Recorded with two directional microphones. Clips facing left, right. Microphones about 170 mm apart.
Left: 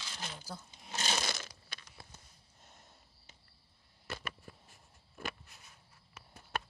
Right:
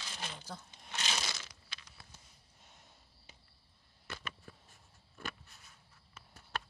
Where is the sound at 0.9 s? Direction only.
40° left (ahead or behind).